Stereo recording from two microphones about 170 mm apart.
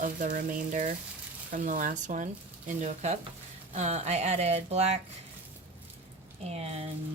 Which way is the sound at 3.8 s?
40° right (ahead or behind).